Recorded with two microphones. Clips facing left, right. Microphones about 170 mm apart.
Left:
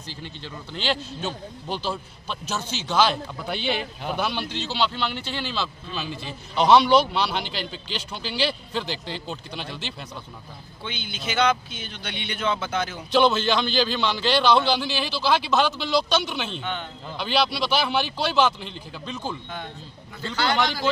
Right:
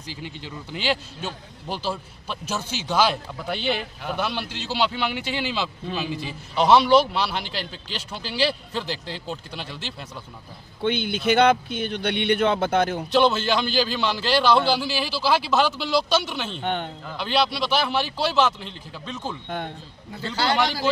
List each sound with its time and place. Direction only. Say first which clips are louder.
0.7 s a man's voice: right 1 dB; 10° right (ahead or behind)
10.8 s speech: right 11 dB; 60° right (ahead or behind)
13.1 s a man's voice: left 1 dB; 5° right (ahead or behind)
16.5 s speech: right 4 dB; 55° right (ahead or behind)
17.2 s a man's voice: right 1 dB; centre (ahead or behind)
20.2 s a man's voice: right 1 dB; 35° right (ahead or behind)